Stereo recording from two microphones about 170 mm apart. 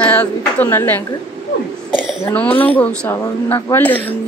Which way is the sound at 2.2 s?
10° left (ahead or behind).